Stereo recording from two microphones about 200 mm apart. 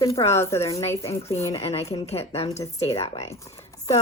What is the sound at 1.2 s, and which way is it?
Speech, 15° left (ahead or behind).